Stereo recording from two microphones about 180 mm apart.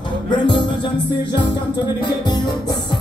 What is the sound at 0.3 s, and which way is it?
Music, 25° left (ahead or behind).